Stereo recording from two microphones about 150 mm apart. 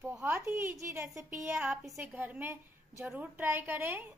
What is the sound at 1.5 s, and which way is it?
A woman's voice, 5° right (ahead or behind).